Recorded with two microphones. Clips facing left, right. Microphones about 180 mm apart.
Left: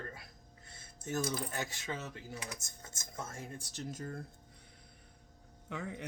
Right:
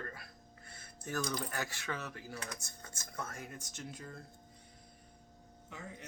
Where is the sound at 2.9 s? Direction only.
20° left (ahead or behind); by 4.2 s 45° left (ahead or behind).